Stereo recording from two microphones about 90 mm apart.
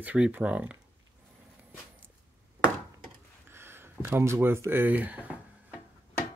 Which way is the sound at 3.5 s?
25° right (ahead or behind).